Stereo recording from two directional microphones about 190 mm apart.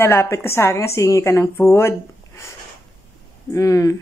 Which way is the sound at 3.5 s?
15° left (ahead or behind).